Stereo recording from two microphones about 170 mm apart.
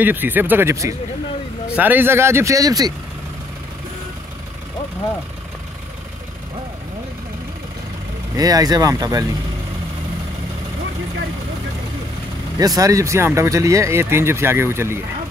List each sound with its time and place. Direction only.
0.0 s speech: 10° right (ahead or behind)
8.4 s speech: 20° right (ahead or behind)
12.5 s speech: 20° right (ahead or behind)